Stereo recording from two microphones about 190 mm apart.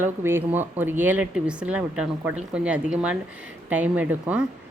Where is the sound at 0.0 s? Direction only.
10° right (ahead or behind).